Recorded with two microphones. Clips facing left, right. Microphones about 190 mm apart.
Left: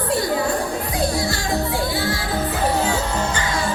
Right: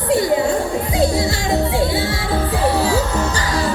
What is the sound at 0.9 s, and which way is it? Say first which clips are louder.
Music: right 5 dB; 25° right (ahead or behind).